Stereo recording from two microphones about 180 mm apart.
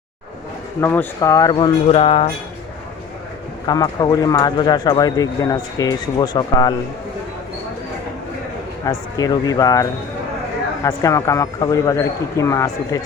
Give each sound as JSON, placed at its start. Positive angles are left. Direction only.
{"t": 0.8, "sound": "speech", "side_deg": 10}
{"t": 3.7, "sound": "speech", "side_deg": 20}
{"t": 8.9, "sound": "speech", "side_deg": 20}
{"t": 10.8, "sound": "speech", "side_deg": 20}